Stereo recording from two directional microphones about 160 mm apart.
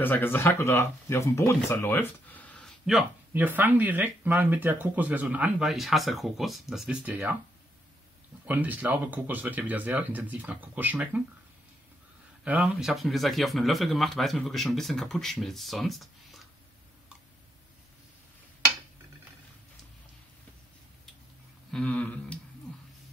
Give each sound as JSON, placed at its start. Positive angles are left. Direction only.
{"t": 0.0, "sound": "speech", "side_deg": 10}
{"t": 3.3, "sound": "speech", "side_deg": -10}
{"t": 8.5, "sound": "speech", "side_deg": -10}
{"t": 12.4, "sound": "speech", "side_deg": -5}
{"t": 21.7, "sound": "a sound", "side_deg": 10}